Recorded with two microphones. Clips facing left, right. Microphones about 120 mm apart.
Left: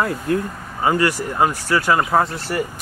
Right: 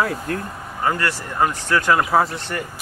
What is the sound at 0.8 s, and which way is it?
Speech, 15° left (ahead or behind).